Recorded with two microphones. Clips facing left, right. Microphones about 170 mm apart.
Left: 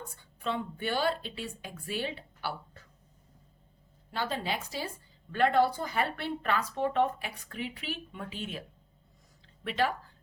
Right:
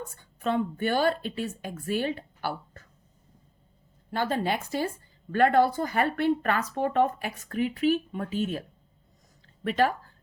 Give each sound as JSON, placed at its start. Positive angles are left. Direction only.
{"t": 0.2, "sound": "speech", "side_deg": -45}
{"t": 4.1, "sound": "speech", "side_deg": -50}
{"t": 9.6, "sound": "speech", "side_deg": -45}